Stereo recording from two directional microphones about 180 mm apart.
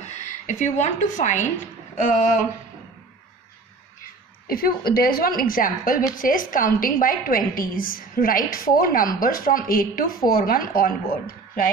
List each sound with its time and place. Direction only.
0.0 s a woman's voice: 40° left (ahead or behind)
4.5 s a woman's voice: 55° left (ahead or behind)